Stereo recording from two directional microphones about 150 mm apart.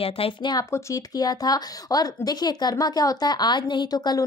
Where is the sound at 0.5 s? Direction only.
25° left (ahead or behind).